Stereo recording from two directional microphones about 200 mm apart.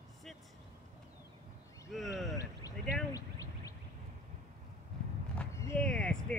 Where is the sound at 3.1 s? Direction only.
15° left (ahead or behind).